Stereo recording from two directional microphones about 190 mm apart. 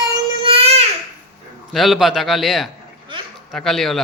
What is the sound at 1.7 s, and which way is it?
A man's voice, centre (ahead or behind).